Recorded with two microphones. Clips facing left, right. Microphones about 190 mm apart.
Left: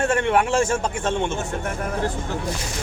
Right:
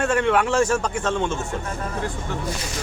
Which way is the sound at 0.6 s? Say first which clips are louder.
Right 1 dB; 25° left (ahead or behind).